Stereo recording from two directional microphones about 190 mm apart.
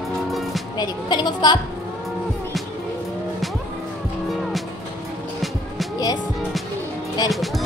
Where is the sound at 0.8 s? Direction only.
20° left (ahead or behind).